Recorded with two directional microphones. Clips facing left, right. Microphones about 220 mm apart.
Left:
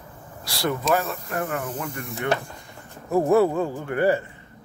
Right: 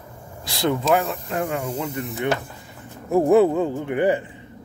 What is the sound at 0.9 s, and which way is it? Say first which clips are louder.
Speech: right 3 dB; 15° right (ahead or behind).